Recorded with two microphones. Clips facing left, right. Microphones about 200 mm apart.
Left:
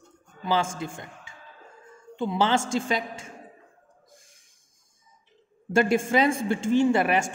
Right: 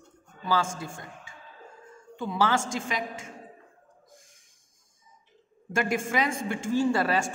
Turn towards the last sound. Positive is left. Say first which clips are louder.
# left 3 dB
turn(degrees=20)  # may be behind; listen again after turning